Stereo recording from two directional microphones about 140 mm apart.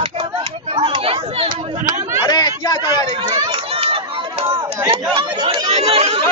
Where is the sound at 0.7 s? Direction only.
40° right (ahead or behind).